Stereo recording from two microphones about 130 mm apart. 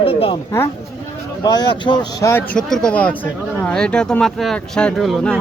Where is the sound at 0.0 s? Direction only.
45° left (ahead or behind).